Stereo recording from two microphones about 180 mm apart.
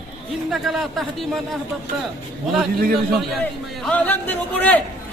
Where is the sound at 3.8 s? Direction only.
10° left (ahead or behind).